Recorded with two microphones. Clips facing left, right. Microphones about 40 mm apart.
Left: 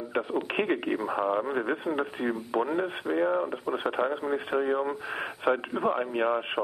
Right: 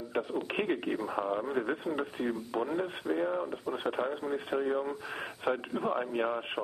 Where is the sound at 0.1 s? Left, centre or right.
Left.